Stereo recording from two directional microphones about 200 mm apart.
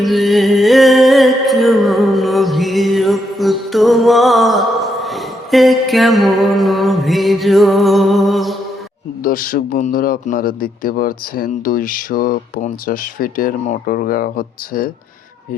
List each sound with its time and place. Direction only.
0.0 s music: centre (ahead or behind)
9.2 s a man's voice: 45° left (ahead or behind)